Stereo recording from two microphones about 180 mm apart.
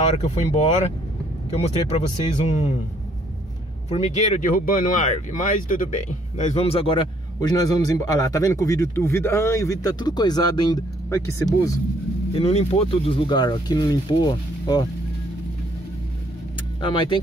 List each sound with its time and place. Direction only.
0.1 s speech: 35° left (ahead or behind)
3.9 s speech: 40° left (ahead or behind); by 11.4 s 20° left (ahead or behind)
12.3 s speech: 35° left (ahead or behind)
16.8 s speech: 25° left (ahead or behind)